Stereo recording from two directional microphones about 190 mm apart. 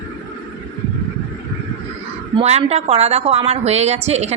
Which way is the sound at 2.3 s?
35° right (ahead or behind).